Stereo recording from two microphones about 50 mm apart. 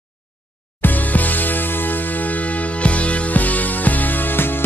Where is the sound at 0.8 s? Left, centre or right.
Left.